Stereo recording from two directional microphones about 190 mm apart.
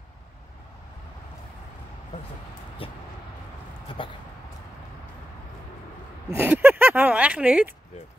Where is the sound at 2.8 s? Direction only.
30° left (ahead or behind).